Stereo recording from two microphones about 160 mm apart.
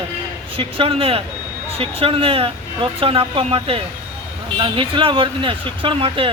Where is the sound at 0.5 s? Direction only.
35° right (ahead or behind).